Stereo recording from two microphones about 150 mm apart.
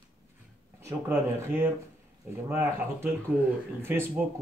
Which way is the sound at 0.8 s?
20° right (ahead or behind).